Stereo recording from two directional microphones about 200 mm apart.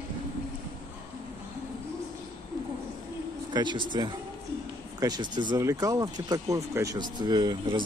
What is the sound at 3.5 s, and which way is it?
Speech, 20° right (ahead or behind).